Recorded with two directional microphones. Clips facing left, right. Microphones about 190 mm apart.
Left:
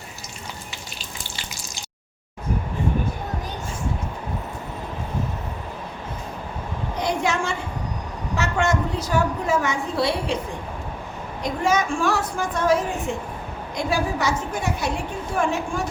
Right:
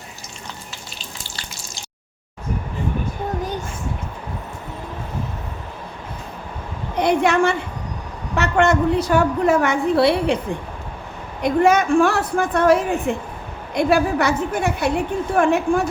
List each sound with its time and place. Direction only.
6.9 s a woman's voice: 60° right (ahead or behind)
11.4 s a woman's voice: 60° right (ahead or behind)